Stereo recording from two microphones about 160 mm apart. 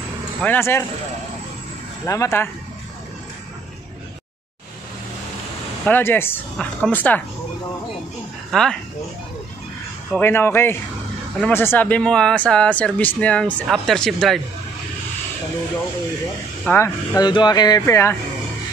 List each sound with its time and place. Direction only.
0.4 s speech: 15° left (ahead or behind)
2.0 s speech: 20° left (ahead or behind)
5.9 s speech: 15° left (ahead or behind)
8.5 s speech: 5° left (ahead or behind)
10.1 s speech: 15° left (ahead or behind)
16.6 s speech: 15° left (ahead or behind)